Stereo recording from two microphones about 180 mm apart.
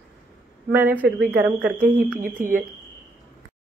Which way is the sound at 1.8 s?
45° right (ahead or behind).